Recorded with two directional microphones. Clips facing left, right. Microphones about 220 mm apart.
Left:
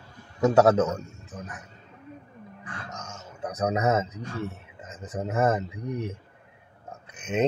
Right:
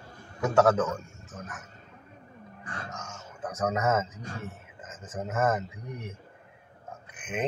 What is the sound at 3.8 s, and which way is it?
A man's voice, 35° left (ahead or behind).